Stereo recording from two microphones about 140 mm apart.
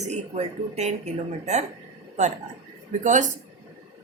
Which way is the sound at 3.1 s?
60° right (ahead or behind).